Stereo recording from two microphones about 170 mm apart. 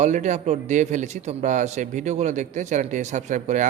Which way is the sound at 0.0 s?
45° right (ahead or behind).